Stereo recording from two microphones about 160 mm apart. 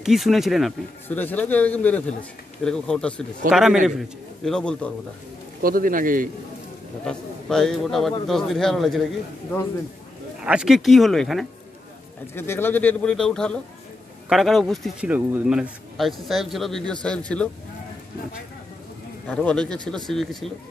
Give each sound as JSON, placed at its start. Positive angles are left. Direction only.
{"t": 0.0, "sound": "speech", "side_deg": 0}
{"t": 1.0, "sound": "speech", "side_deg": 10}
{"t": 5.6, "sound": "a man's voice", "side_deg": -65}
{"t": 7.1, "sound": "speech", "side_deg": 5}
{"t": 10.4, "sound": "speech", "side_deg": -5}
{"t": 12.4, "sound": "speech", "side_deg": 15}
{"t": 19.2, "sound": "speech", "side_deg": 5}